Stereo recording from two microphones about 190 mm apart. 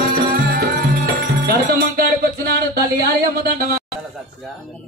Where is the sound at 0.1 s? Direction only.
50° right (ahead or behind).